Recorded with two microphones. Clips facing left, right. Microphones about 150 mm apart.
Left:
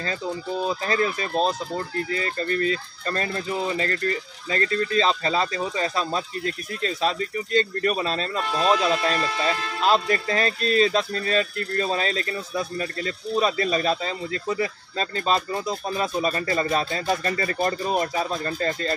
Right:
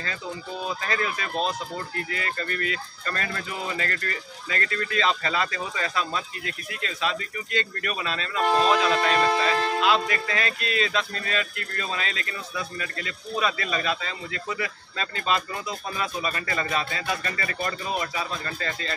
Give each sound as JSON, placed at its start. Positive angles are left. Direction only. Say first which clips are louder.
{"t": 0.7, "sound": "a man's voice", "louder": "left 4 dB", "side_deg": 35}
{"t": 9.1, "sound": "speech", "louder": "right 4 dB", "side_deg": -45}
{"t": 9.8, "sound": "a man's voice", "louder": "left 2 dB", "side_deg": 40}